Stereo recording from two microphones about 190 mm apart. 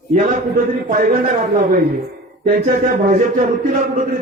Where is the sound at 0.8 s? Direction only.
45° right (ahead or behind).